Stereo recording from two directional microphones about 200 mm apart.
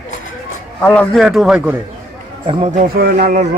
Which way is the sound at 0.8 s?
5° left (ahead or behind).